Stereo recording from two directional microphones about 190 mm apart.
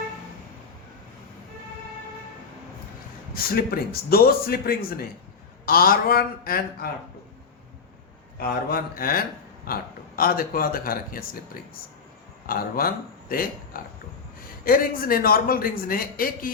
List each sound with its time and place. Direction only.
3.3 s a man's voice: 50° left (ahead or behind)
8.4 s a man's voice: 50° left (ahead or behind)
12.5 s a man's voice: 50° left (ahead or behind)